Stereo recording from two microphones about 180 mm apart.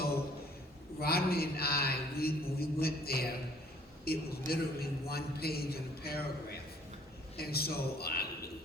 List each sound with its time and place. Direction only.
1.0 s a man's voice: 60° left (ahead or behind)
7.3 s a man's voice: 60° left (ahead or behind)